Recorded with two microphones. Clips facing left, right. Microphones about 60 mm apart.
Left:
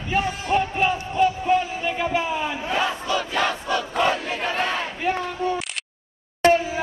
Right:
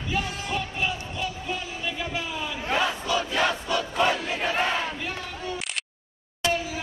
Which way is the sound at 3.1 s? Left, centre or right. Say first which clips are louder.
Left 1 dB; left.